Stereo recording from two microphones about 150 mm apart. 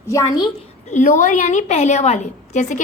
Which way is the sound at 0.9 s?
55° left (ahead or behind).